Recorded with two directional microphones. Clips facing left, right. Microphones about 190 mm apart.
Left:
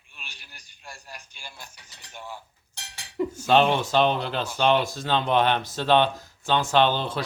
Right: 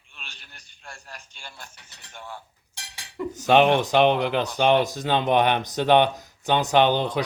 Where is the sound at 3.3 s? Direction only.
15° right (ahead or behind).